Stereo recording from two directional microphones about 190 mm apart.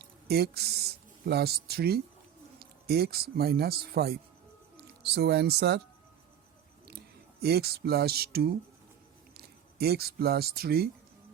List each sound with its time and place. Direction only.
0.0 s speech: 55° right (ahead or behind)
7.4 s speech: 55° right (ahead or behind)